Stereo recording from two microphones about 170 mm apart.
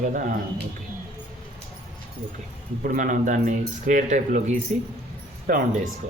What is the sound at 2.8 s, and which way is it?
Speech, 50° right (ahead or behind).